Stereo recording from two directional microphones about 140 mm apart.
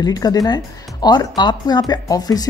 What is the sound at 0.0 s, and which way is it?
Speech, 25° left (ahead or behind).